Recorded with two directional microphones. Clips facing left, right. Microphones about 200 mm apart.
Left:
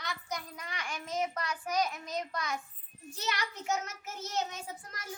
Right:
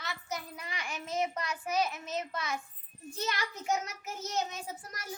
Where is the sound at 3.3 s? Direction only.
15° right (ahead or behind).